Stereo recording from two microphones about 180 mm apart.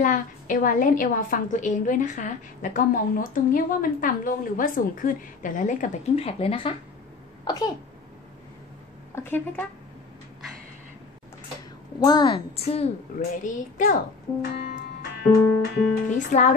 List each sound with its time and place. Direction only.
0.0 s a woman's voice: 50° left (ahead or behind); by 7.7 s 20° left (ahead or behind)
9.1 s speech: 10° left (ahead or behind)
12.0 s a woman's voice: 25° left (ahead or behind)
13.4 s a woman's voice: 45° left (ahead or behind)
14.4 s music: 65° left (ahead or behind)
16.3 s a woman's voice: 45° left (ahead or behind)